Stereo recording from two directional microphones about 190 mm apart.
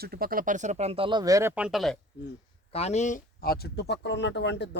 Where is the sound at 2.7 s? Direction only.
35° left (ahead or behind).